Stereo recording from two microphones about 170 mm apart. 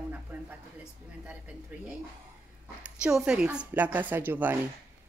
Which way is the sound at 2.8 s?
5° right (ahead or behind).